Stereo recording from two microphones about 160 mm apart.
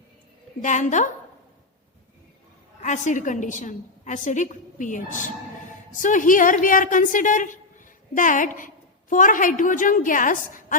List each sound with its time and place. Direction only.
0.6 s a woman's voice: 50° left (ahead or behind)
2.8 s a woman's voice: 50° left (ahead or behind)